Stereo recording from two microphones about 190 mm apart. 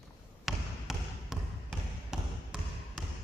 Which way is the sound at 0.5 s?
Centre (ahead or behind).